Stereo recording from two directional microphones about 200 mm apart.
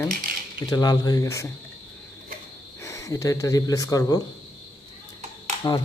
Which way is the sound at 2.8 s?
15° left (ahead or behind).